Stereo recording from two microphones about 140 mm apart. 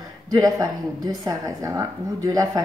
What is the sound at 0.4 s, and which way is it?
Speech, 25° right (ahead or behind).